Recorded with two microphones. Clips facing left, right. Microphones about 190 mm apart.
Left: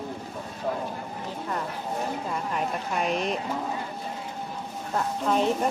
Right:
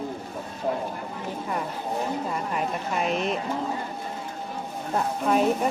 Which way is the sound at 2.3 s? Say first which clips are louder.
Right 1 dB; 5° right (ahead or behind).